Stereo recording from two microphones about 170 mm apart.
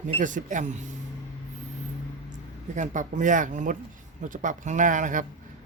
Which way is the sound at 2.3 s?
45° right (ahead or behind).